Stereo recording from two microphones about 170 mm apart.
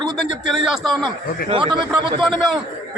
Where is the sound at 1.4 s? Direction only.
30° right (ahead or behind).